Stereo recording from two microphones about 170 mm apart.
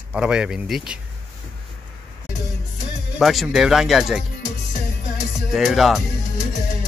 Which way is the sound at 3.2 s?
Centre (ahead or behind).